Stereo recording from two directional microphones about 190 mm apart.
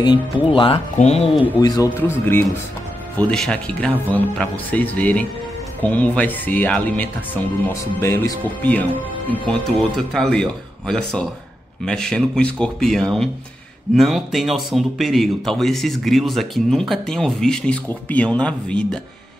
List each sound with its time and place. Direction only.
0.0 s speech: 25° left (ahead or behind)
1.9 s speech: 10° left (ahead or behind)